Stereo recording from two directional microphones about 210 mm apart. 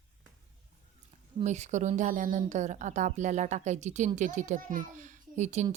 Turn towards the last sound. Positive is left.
turn(degrees=-35)  # may be behind; listen again after turning